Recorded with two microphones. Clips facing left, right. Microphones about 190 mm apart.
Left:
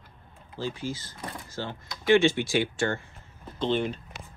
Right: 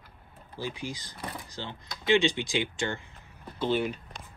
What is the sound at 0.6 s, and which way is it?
Speech, 15° right (ahead or behind).